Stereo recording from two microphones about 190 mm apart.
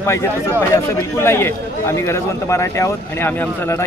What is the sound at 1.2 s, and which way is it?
Speech, 15° left (ahead or behind).